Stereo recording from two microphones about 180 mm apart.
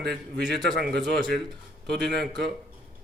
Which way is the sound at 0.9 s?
65° right (ahead or behind).